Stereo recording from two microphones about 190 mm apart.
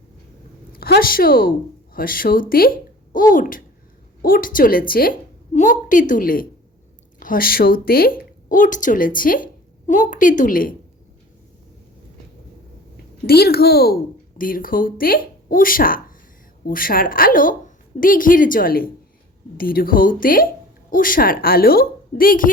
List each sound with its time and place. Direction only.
0.8 s a woman's voice: 50° left (ahead or behind)
13.2 s a woman's voice: 55° left (ahead or behind)